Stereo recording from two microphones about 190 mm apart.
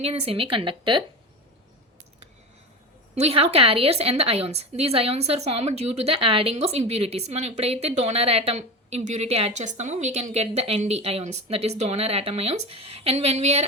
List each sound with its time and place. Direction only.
0.0 s a woman's voice: 30° right (ahead or behind)
3.2 s a woman's voice: 30° right (ahead or behind)